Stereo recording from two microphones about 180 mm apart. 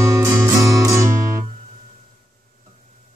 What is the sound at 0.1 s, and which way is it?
Music, 20° right (ahead or behind).